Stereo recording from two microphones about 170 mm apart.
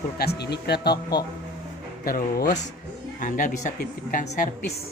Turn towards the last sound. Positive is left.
turn(degrees=55)  # may be behind; listen again after turning